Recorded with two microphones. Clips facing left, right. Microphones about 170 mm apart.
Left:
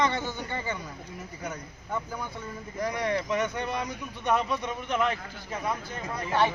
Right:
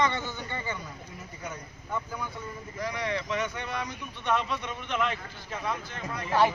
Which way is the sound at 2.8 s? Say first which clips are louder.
Left 3 dB; 45° left (ahead or behind).